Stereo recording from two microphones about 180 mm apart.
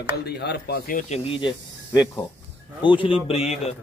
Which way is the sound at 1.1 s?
30° left (ahead or behind).